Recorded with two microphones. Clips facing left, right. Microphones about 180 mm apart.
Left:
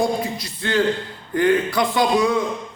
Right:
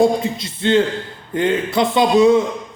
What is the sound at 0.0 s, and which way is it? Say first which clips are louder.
A man's voice: right 6 dB; 25° right (ahead or behind).